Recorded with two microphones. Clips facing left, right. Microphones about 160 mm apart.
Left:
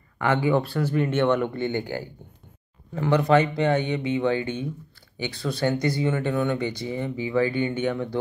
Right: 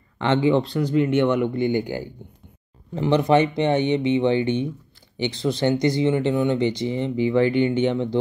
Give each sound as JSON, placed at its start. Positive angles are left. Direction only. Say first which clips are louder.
{"t": 0.2, "sound": "speech", "louder": "right 3 dB", "side_deg": -20}